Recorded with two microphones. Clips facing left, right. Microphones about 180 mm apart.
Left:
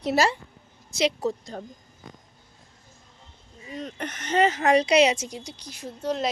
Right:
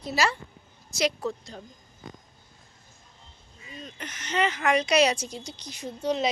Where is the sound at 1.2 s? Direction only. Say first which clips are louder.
Left 4 dB; 45° left (ahead or behind).